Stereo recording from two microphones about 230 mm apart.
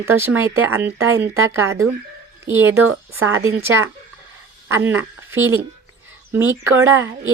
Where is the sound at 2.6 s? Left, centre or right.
Right.